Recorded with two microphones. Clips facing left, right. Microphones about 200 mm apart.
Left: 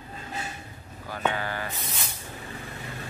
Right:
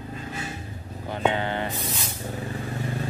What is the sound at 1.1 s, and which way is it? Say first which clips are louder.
Speech: right 4 dB; 25° right (ahead or behind).